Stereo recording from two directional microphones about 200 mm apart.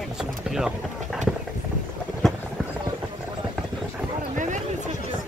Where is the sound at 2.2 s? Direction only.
Centre (ahead or behind).